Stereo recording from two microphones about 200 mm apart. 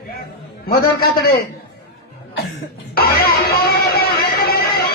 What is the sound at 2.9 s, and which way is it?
Music, 50° left (ahead or behind).